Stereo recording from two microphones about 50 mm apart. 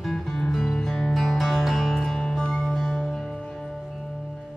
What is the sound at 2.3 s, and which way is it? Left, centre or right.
Music, centre.